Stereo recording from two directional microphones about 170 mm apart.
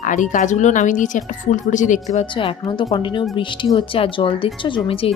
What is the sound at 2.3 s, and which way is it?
A woman's voice, 30° left (ahead or behind).